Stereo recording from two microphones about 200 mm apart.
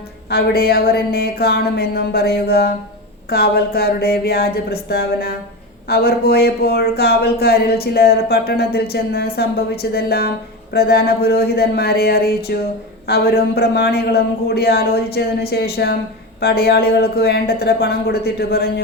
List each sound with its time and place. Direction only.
0.3 s speech: 50° left (ahead or behind)